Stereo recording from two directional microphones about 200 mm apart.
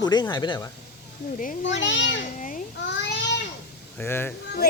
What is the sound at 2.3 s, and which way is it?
Babbling, 40° left (ahead or behind).